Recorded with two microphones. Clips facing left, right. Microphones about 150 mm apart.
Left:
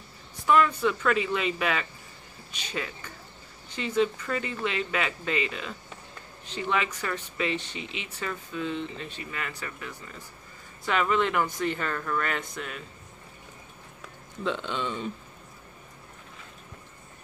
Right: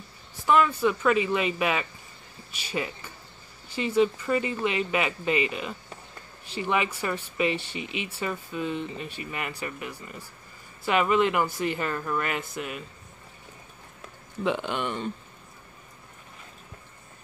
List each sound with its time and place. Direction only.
0.5 s speech: 5° right (ahead or behind)
7.8 s speech: 55° right (ahead or behind)
8.1 s speech: 10° right (ahead or behind)
14.4 s speech: 10° right (ahead or behind)